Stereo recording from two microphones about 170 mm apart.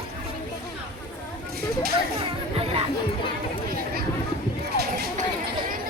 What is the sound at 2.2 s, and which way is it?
Music, 35° right (ahead or behind).